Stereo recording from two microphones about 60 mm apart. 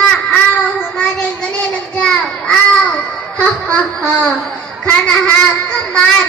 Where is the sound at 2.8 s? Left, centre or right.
Left.